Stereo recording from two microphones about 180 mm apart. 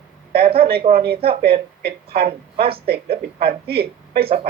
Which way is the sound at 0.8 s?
55° right (ahead or behind).